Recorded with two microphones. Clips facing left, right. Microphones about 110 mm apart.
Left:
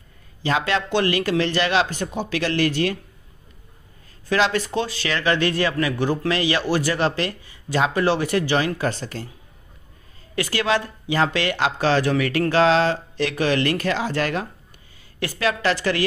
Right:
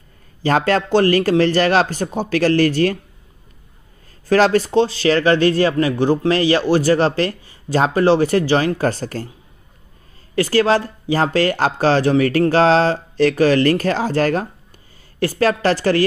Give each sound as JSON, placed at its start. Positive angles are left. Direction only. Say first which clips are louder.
{"t": 0.4, "sound": "a man's voice", "louder": "right 6 dB", "side_deg": -45}
{"t": 4.3, "sound": "a man's voice", "louder": "right 7 dB", "side_deg": -40}
{"t": 10.3, "sound": "a man's voice", "louder": "right 7 dB", "side_deg": -35}